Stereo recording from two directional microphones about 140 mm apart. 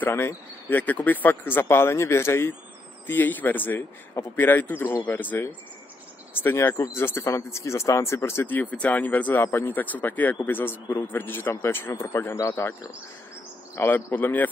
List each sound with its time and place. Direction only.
0.0 s speech: 15° left (ahead or behind)